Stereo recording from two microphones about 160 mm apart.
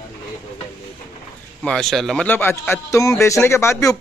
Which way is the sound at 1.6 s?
5° left (ahead or behind).